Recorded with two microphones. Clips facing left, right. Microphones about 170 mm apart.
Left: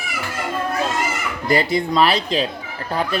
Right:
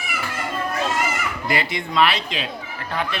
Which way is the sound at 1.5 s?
35° left (ahead or behind).